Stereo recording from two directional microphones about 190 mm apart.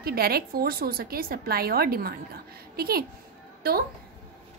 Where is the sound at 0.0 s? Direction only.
55° right (ahead or behind).